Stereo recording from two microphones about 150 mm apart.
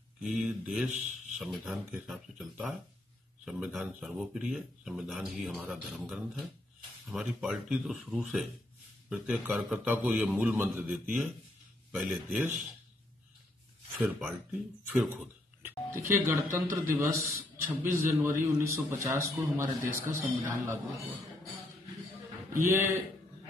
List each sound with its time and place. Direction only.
0.2 s speech: 5° right (ahead or behind)
0.8 s speech: 55° right (ahead or behind)
1.4 s a man's voice: centre (ahead or behind)
14.0 s speech: 5° right (ahead or behind)
15.9 s a man's voice: 15° right (ahead or behind)
22.5 s a man's voice: 15° right (ahead or behind)